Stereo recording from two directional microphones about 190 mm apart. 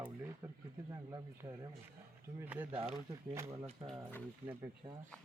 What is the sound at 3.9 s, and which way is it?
Speech, 10° left (ahead or behind).